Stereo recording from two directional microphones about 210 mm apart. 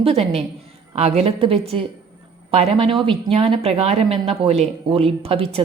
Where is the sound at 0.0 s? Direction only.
30° right (ahead or behind).